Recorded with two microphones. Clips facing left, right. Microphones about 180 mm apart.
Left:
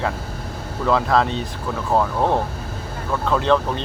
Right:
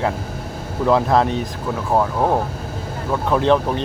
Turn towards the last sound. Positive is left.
turn(degrees=-15)  # may be behind; listen again after turning